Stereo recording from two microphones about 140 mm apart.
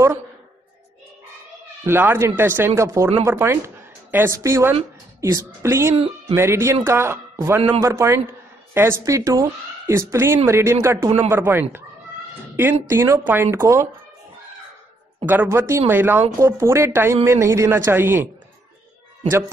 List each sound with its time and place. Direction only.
1.9 s a woman's voice: 15° right (ahead or behind)
5.9 s speech: 45° right (ahead or behind)
6.3 s a man's voice: 20° right (ahead or behind)
12.9 s speech: 15° right (ahead or behind)
15.4 s speech: 20° right (ahead or behind)